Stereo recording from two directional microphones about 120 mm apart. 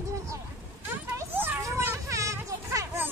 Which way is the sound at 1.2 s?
15° right (ahead or behind).